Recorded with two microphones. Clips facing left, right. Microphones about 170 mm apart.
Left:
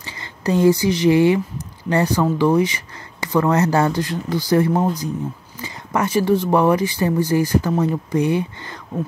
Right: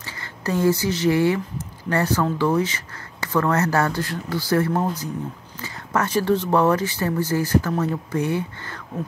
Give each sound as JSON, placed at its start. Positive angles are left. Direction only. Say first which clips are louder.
{"t": 0.0, "sound": "speech", "louder": "left 4 dB", "side_deg": 20}